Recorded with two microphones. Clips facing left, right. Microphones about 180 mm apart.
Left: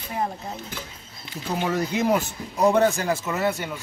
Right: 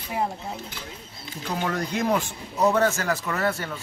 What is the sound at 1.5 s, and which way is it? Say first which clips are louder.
Speech: left 3 dB; 10° left (ahead or behind).